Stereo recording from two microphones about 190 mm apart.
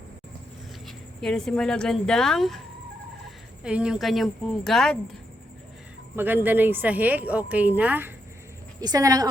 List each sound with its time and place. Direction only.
0.9 s speech: centre (ahead or behind)
6.1 s speech: 10° right (ahead or behind)
8.8 s speech: 20° right (ahead or behind)